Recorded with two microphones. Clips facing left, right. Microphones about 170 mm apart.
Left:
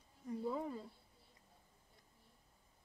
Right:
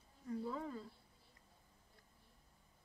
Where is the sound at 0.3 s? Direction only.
15° left (ahead or behind).